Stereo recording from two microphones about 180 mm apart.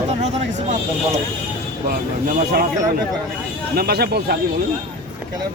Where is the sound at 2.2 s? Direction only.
55° right (ahead or behind).